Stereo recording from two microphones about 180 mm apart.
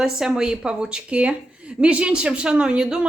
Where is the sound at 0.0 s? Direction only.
5° right (ahead or behind).